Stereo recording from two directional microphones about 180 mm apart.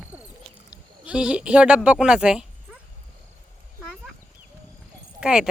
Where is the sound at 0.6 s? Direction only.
5° right (ahead or behind).